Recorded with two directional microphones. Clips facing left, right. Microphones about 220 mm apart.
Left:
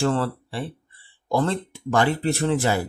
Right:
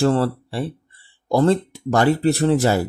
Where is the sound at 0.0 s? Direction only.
35° right (ahead or behind).